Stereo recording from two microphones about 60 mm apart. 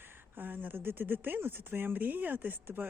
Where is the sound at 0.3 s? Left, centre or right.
Right.